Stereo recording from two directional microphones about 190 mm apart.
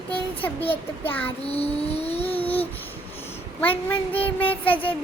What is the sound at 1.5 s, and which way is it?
Vehicle, 30° left (ahead or behind).